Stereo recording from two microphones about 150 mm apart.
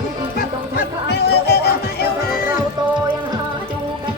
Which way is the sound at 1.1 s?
90° left.